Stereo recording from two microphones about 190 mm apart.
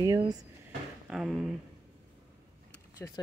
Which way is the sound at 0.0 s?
20° right (ahead or behind).